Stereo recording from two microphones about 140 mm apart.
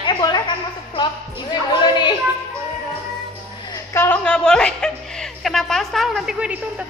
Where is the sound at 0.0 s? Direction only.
30° left (ahead or behind).